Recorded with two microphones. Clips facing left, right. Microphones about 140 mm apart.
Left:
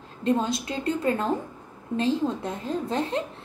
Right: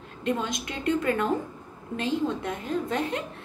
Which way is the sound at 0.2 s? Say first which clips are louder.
Left 4 dB; 30° left (ahead or behind).